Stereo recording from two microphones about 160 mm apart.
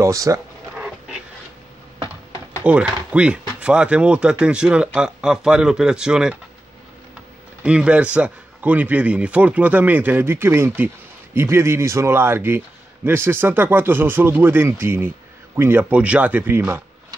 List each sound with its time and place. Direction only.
0.0 s speech: 20° right (ahead or behind)
2.6 s speech: 10° right (ahead or behind)
7.6 s a man's voice: 5° right (ahead or behind)